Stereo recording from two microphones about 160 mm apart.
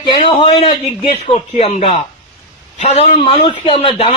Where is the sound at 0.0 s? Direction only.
30° left (ahead or behind).